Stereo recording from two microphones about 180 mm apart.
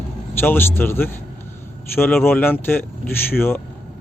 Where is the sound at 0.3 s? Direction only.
10° left (ahead or behind).